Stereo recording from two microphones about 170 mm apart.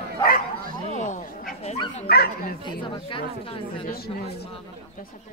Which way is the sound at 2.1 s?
65° left (ahead or behind).